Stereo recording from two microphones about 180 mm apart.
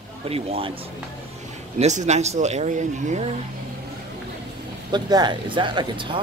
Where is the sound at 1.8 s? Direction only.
40° right (ahead or behind).